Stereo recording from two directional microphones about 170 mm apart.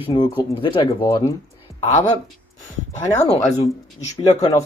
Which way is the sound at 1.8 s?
45° left (ahead or behind).